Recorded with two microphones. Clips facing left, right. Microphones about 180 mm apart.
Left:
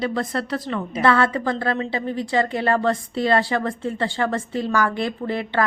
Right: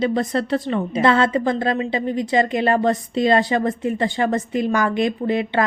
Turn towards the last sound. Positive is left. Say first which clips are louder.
# right 4 dB
turn(degrees=-20)  # may be behind; listen again after turning